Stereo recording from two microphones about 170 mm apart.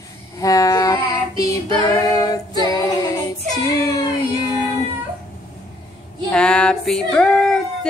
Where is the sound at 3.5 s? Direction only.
20° left (ahead or behind).